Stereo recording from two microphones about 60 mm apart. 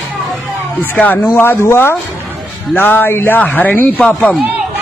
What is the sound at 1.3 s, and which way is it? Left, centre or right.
Speech, left.